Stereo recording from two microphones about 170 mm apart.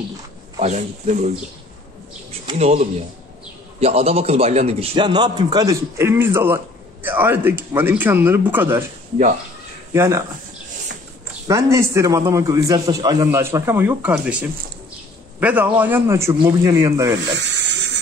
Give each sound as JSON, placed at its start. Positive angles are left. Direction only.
{"t": 0.6, "sound": "speech", "side_deg": -40}
{"t": 2.5, "sound": "a man's voice", "side_deg": -40}
{"t": 9.9, "sound": "a man's voice", "side_deg": -15}
{"t": 11.4, "sound": "a man's voice", "side_deg": -15}
{"t": 15.4, "sound": "a man's voice", "side_deg": -10}
{"t": 17.3, "sound": "a sound", "side_deg": -90}